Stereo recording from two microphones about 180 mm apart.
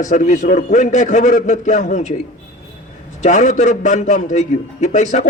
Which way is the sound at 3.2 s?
45° left (ahead or behind).